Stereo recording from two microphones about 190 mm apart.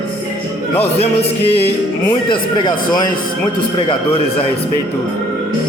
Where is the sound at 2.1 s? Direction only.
25° left (ahead or behind).